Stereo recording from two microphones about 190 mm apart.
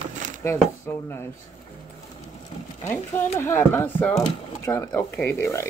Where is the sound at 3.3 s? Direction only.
10° left (ahead or behind).